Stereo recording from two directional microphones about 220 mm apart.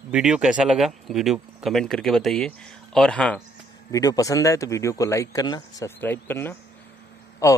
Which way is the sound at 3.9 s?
15° left (ahead or behind).